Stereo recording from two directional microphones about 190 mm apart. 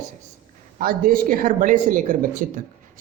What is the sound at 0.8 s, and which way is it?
A man's voice, 50° right (ahead or behind).